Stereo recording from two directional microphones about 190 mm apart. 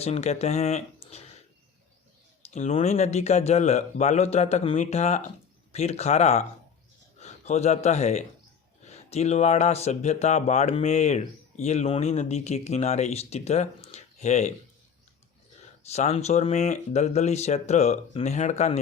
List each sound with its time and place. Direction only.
0.0 s speech: 35° left (ahead or behind)
2.5 s a man's voice: 35° left (ahead or behind)
15.9 s speech: 35° left (ahead or behind)